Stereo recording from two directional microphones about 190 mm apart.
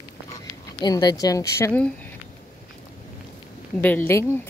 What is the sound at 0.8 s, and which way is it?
Speech, 20° left (ahead or behind).